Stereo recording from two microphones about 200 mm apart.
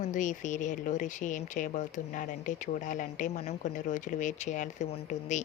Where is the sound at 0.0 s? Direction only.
40° left (ahead or behind).